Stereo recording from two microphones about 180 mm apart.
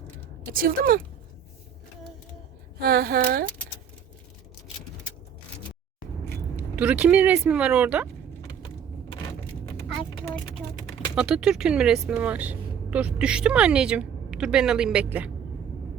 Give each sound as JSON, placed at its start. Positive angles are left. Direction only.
{"t": 0.5, "sound": "speech", "side_deg": -55}
{"t": 2.8, "sound": "speech", "side_deg": -55}
{"t": 6.6, "sound": "speech", "side_deg": -10}
{"t": 11.1, "sound": "speech", "side_deg": -5}